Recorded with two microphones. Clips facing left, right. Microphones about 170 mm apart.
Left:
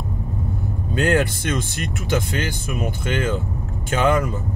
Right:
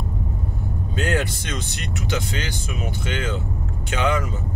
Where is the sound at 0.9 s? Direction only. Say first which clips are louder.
Left 5 dB; 55° left (ahead or behind).